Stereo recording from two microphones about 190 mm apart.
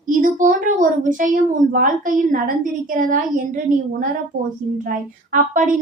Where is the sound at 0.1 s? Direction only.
45° right (ahead or behind).